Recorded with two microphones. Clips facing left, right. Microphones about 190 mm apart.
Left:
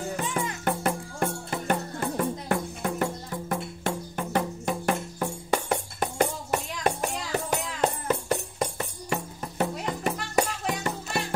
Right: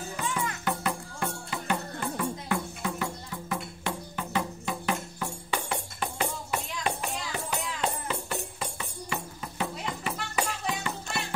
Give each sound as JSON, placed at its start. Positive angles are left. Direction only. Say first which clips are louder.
{"t": 0.7, "sound": "music", "louder": "left 4 dB", "side_deg": 50}